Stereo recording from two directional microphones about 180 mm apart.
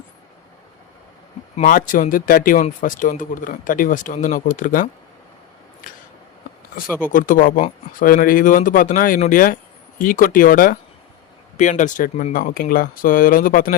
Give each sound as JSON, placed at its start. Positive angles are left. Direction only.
{"t": 1.5, "sound": "speech", "side_deg": 45}
{"t": 7.0, "sound": "speech", "side_deg": 50}